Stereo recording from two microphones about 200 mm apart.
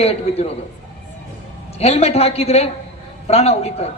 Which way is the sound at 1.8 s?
30° left (ahead or behind).